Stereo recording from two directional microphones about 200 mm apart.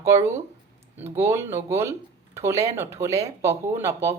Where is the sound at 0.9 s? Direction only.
10° right (ahead or behind).